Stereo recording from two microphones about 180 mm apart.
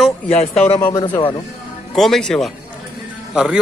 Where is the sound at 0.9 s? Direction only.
25° left (ahead or behind).